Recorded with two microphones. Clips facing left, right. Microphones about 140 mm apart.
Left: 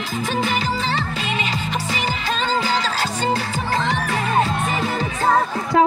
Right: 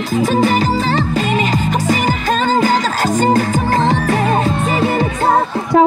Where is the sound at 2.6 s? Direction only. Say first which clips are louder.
Right 7 dB; 50° right (ahead or behind).